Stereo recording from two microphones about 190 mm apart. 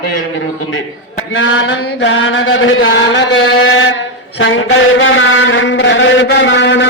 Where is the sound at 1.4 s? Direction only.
75° left (ahead or behind); by 3.2 s 90° left.